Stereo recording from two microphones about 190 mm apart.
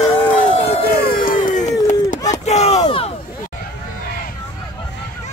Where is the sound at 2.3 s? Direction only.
35° left (ahead or behind).